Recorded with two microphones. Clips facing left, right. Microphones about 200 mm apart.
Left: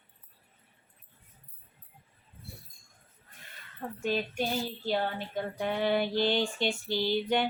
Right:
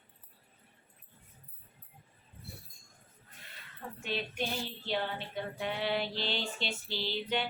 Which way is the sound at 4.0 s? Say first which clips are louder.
Left 5 dB; 40° left (ahead or behind).